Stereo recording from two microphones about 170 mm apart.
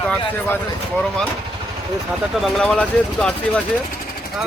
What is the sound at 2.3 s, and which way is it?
Speech, centre (ahead or behind).